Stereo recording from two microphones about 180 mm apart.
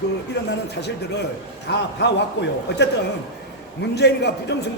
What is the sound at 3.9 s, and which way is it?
Speech, 70° left (ahead or behind).